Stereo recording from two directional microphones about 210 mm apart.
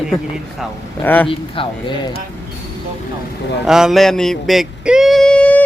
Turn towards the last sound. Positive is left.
turn(degrees=5)  # may be behind; listen again after turning